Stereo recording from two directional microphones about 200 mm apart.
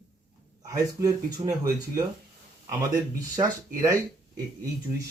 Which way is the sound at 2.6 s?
15° right (ahead or behind).